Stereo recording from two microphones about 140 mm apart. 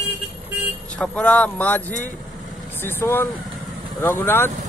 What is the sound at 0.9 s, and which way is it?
Speech, 10° left (ahead or behind).